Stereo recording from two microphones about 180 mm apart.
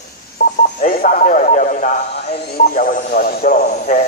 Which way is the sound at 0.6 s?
45° left (ahead or behind).